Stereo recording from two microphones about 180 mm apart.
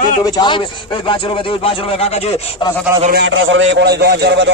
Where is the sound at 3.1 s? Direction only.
90° right; by 4.5 s 65° right (ahead or behind).